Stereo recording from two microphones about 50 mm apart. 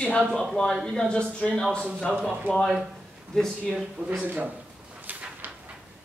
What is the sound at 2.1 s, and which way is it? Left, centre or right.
Speech, right.